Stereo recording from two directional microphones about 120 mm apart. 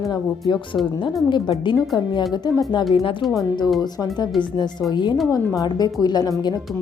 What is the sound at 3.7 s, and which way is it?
Speech, 35° left (ahead or behind).